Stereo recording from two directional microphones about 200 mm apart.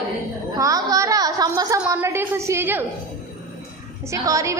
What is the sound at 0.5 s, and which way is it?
A woman's voice, 15° right (ahead or behind).